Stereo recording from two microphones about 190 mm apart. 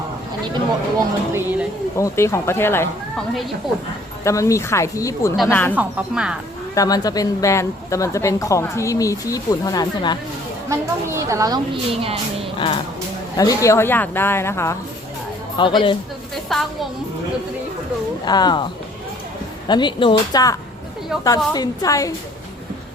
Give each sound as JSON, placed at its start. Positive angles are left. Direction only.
{"t": 1.3, "sound": "a woman's voice", "side_deg": -10}
{"t": 2.0, "sound": "a woman's voice", "side_deg": 15}
{"t": 3.6, "sound": "speech", "side_deg": 0}
{"t": 4.2, "sound": "a woman's voice", "side_deg": 15}
{"t": 5.7, "sound": "speech", "side_deg": -5}
{"t": 6.7, "sound": "a woman's voice", "side_deg": 20}
{"t": 10.7, "sound": "a woman's voice", "side_deg": -15}
{"t": 12.5, "sound": "a woman's voice", "side_deg": 25}
{"t": 15.5, "sound": "speech", "side_deg": 25}
{"t": 16.5, "sound": "speech", "side_deg": 0}
{"t": 18.3, "sound": "speech", "side_deg": 20}